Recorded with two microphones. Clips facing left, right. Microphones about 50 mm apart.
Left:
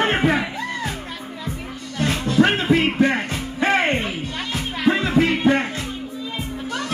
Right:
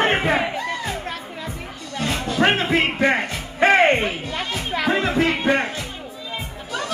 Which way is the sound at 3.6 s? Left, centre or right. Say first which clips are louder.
Right 4 dB; right.